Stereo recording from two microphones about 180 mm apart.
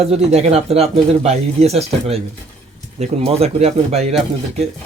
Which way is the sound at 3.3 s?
35° right (ahead or behind).